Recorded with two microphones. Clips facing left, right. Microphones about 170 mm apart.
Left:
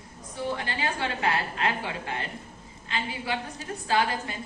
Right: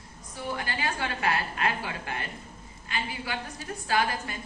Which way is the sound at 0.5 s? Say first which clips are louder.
Left 1 dB; 25° left (ahead or behind).